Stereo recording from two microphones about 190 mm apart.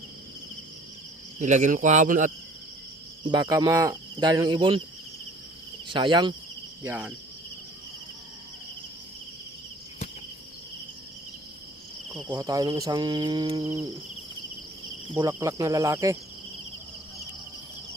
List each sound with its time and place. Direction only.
1.4 s speech: 40° right (ahead or behind)
3.2 s cricket: 20° right (ahead or behind)
5.9 s cricket: 25° right (ahead or behind)
6.8 s cricket: 10° right (ahead or behind)
12.3 s cricket: 20° right (ahead or behind)
15.1 s cricket: 20° right (ahead or behind)